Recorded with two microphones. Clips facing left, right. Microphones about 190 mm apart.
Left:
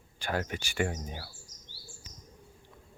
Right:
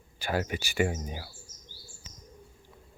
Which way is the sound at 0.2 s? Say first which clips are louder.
Right 3 dB; 5° right (ahead or behind).